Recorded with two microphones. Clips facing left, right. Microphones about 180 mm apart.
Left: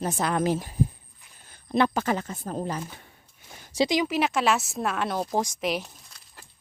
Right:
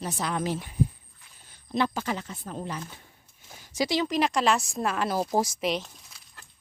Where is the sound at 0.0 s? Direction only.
50° left (ahead or behind).